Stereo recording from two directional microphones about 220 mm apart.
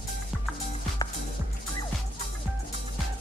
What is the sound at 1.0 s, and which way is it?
Music, 20° left (ahead or behind).